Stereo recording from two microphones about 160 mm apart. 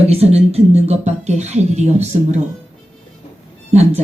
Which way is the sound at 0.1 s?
40° right (ahead or behind).